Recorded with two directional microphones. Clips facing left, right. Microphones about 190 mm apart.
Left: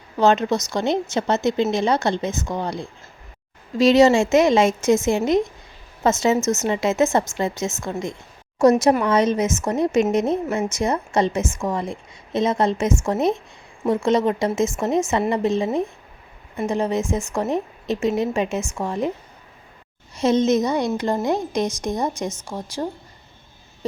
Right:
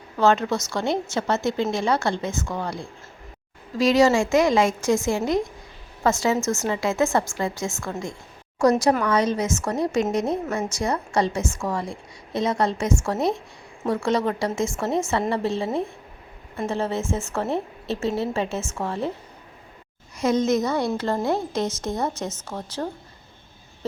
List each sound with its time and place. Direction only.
0.2 s a woman's voice: 20° left (ahead or behind)
20.1 s a woman's voice: 25° left (ahead or behind)